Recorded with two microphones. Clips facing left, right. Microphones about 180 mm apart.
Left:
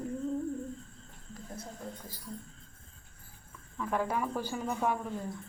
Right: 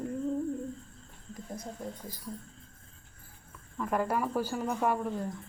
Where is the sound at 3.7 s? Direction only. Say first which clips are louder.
Right 2 dB; 5° right (ahead or behind).